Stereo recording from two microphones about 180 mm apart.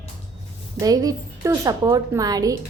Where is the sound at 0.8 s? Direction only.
20° right (ahead or behind).